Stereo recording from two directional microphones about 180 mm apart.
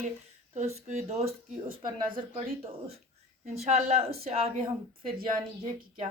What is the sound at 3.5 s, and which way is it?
Speech, 35° right (ahead or behind).